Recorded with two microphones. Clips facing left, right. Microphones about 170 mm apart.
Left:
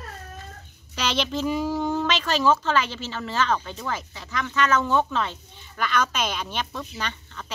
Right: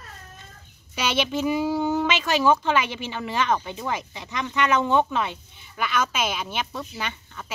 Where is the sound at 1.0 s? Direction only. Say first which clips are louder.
Right 1 dB; 5° right (ahead or behind).